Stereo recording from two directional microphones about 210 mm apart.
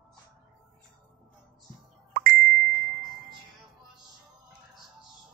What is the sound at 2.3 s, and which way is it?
Chime, 5° left (ahead or behind).